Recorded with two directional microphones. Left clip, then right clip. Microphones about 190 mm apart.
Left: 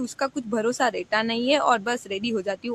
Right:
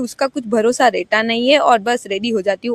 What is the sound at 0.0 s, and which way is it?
Speech, 35° right (ahead or behind).